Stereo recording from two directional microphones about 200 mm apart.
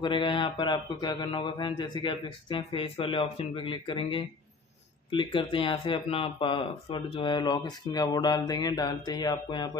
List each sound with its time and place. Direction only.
0.0 s speech: 25° left (ahead or behind)